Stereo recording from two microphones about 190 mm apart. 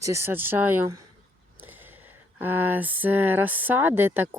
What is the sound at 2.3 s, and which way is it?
Speech, 10° right (ahead or behind).